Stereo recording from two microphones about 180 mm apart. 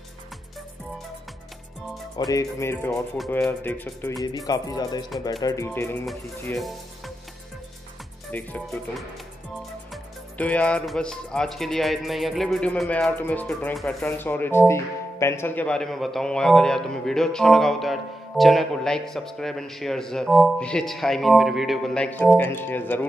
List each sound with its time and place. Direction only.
2.1 s speech: 20° left (ahead or behind)
2.9 s speech: 5° left (ahead or behind)
4.2 s speech: 20° left (ahead or behind)
8.3 s speech: 10° left (ahead or behind)
10.3 s speech: 10° left (ahead or behind)